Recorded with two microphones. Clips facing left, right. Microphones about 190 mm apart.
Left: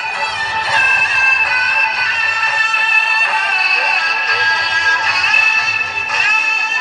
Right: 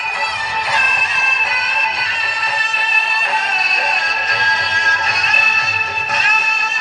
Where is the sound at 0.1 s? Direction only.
15° right (ahead or behind).